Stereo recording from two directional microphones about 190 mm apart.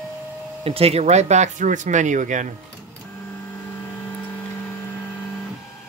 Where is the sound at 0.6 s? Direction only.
30° right (ahead or behind).